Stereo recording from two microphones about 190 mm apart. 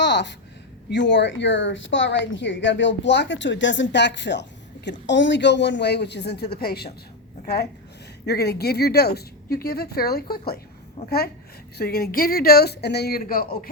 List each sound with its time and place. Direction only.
0.0 s a sound: 65° left (ahead or behind)
0.9 s a woman's voice: 70° left (ahead or behind)
11.8 s speech: 55° left (ahead or behind)